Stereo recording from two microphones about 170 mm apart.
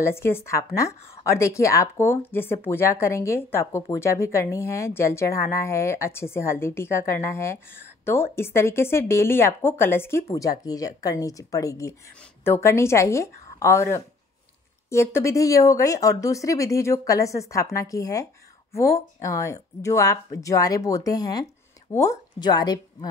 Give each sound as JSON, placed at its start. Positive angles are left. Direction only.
{"t": 0.0, "sound": "speech", "side_deg": 15}
{"t": 19.2, "sound": "speech", "side_deg": 20}